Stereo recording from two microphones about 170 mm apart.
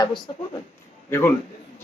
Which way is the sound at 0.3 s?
35° left (ahead or behind).